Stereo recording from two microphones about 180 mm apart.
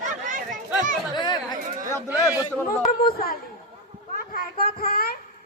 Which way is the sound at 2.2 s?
10° right (ahead or behind).